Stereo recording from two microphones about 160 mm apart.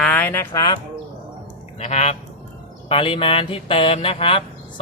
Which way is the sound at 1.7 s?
40° left (ahead or behind).